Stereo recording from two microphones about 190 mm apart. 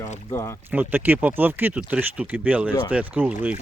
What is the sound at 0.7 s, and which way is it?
Speech, 10° right (ahead or behind).